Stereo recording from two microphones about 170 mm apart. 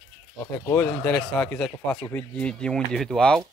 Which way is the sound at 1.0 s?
5° left (ahead or behind).